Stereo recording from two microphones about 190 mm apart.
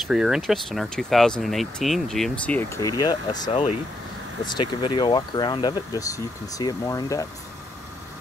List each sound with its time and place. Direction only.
0.1 s speech: 5° right (ahead or behind); by 7.2 s 15° left (ahead or behind)